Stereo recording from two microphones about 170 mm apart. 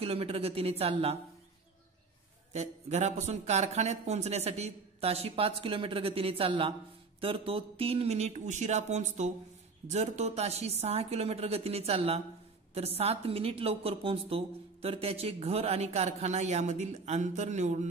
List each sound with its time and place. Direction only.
0.0 s a woman's voice: 35° right (ahead or behind)
2.5 s a woman's voice: 40° right (ahead or behind)